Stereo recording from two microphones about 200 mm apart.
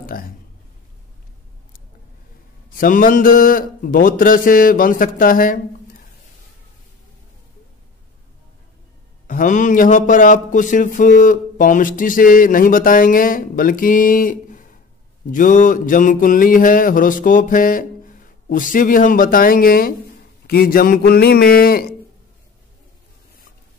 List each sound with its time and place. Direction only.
2.7 s speech: 45° left (ahead or behind)
9.3 s speech: 40° left (ahead or behind)